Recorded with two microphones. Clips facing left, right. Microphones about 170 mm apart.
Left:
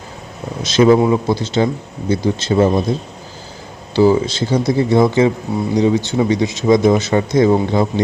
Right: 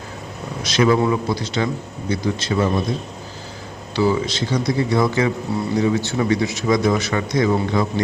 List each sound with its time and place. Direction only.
0.6 s a man's voice: 25° left (ahead or behind)
3.9 s a man's voice: 30° left (ahead or behind)